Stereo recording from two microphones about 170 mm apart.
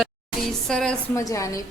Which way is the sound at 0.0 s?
Centre (ahead or behind).